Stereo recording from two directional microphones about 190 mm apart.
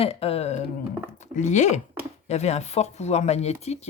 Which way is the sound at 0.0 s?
30° left (ahead or behind).